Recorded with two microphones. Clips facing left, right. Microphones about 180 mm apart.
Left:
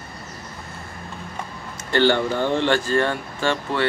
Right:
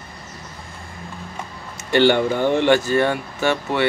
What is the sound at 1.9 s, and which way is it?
Speech, 15° right (ahead or behind).